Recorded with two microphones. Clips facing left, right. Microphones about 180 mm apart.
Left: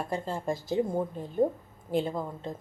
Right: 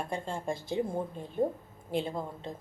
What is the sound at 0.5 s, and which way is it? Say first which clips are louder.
Speech: left 3 dB; 45° left (ahead or behind).